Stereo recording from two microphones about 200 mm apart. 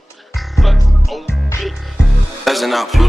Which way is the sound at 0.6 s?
Centre (ahead or behind).